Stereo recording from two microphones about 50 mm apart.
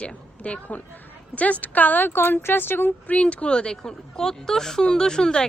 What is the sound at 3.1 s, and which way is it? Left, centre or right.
Speech, left.